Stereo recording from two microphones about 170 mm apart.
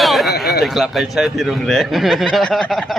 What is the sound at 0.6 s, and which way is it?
Speech, centre (ahead or behind).